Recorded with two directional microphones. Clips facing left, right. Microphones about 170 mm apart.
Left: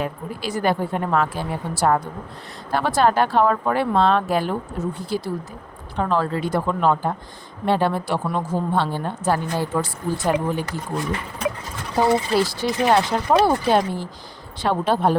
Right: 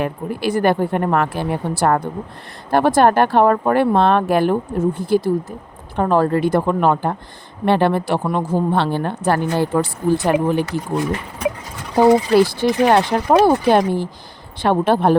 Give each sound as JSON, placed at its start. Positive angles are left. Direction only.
{"t": 0.0, "sound": "a woman's voice", "side_deg": -60}
{"t": 12.5, "sound": "speech", "side_deg": -55}